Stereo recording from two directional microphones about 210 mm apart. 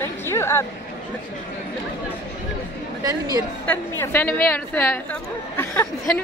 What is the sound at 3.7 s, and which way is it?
A woman's voice, 10° left (ahead or behind).